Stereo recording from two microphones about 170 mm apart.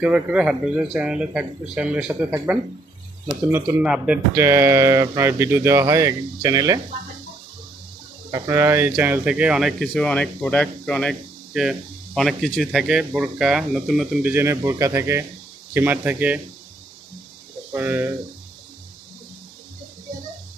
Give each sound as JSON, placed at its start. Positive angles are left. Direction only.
{"t": 0.0, "sound": "speech", "side_deg": -5}
{"t": 8.3, "sound": "speech", "side_deg": -20}
{"t": 14.3, "sound": "speech", "side_deg": -15}
{"t": 17.7, "sound": "speech", "side_deg": -10}